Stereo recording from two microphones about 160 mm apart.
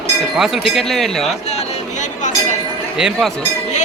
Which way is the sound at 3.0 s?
Centre (ahead or behind).